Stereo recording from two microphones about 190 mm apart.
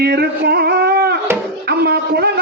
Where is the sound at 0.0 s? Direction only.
60° right (ahead or behind).